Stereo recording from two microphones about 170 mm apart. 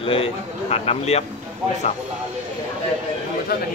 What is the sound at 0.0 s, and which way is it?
A man's voice, 35° left (ahead or behind).